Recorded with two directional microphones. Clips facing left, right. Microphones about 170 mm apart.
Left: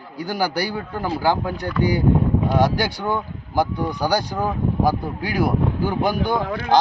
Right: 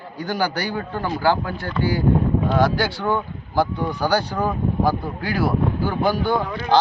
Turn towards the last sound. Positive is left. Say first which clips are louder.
# even
turn(degrees=15)  # may be behind; listen again after turning